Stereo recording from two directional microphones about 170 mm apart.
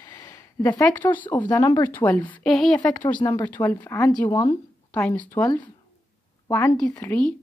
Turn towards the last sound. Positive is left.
turn(degrees=10)  # may be behind; listen again after turning